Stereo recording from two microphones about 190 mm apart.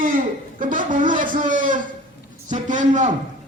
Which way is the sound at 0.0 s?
45° right (ahead or behind).